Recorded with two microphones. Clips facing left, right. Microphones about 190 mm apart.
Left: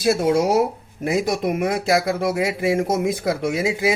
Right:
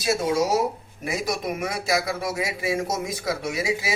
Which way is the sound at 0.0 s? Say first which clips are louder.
Left 5 dB; 60° left (ahead or behind).